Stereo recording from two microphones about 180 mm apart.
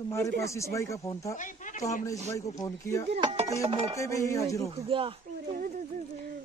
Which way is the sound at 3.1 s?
25° right (ahead or behind).